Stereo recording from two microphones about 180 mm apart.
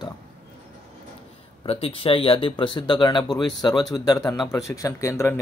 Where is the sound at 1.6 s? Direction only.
30° left (ahead or behind); by 5.4 s 15° left (ahead or behind).